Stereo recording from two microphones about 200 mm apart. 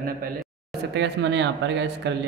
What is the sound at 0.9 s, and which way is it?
Speech, 60° right (ahead or behind).